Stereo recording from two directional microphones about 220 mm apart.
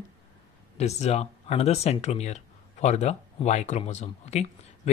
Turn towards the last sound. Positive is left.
turn(degrees=30)  # may be behind; listen again after turning